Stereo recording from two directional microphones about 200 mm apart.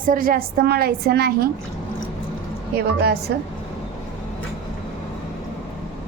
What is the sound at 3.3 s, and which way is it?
Speech, 55° right (ahead or behind).